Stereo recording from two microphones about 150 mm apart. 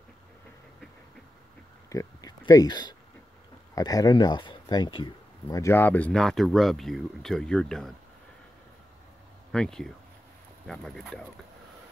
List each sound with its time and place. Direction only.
1.9 s a sound: 25° left (ahead or behind)
3.7 s speech: 25° left (ahead or behind); by 7.9 s 5° left (ahead or behind)
9.5 s speech: 5° left (ahead or behind)